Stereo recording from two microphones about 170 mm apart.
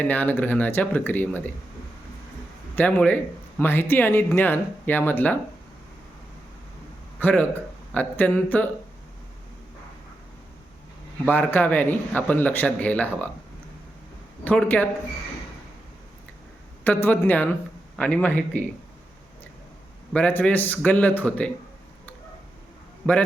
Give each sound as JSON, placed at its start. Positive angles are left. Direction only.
{"t": 0.0, "sound": "a man's voice", "side_deg": 10}
{"t": 2.7, "sound": "a man's voice", "side_deg": 10}
{"t": 7.2, "sound": "speech", "side_deg": 10}
{"t": 11.3, "sound": "a man's voice", "side_deg": 10}
{"t": 14.4, "sound": "a man's voice", "side_deg": 10}
{"t": 16.8, "sound": "a man's voice", "side_deg": 10}
{"t": 20.1, "sound": "a man's voice", "side_deg": 10}
{"t": 23.1, "sound": "a man's voice", "side_deg": 5}